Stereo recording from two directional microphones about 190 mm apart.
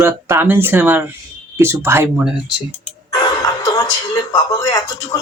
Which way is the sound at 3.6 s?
20° left (ahead or behind).